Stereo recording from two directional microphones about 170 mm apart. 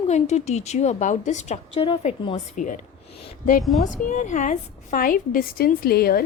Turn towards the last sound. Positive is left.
turn(degrees=65)  # may be behind; listen again after turning